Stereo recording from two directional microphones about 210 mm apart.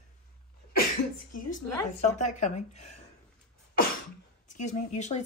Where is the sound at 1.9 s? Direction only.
35° left (ahead or behind).